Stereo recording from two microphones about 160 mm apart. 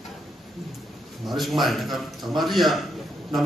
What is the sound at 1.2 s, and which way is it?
A man's voice, centre (ahead or behind).